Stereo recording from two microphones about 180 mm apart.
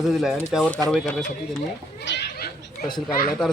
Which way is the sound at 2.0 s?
70° left (ahead or behind).